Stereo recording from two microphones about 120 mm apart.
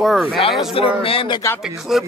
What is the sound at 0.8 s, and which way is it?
Speech, 50° left (ahead or behind).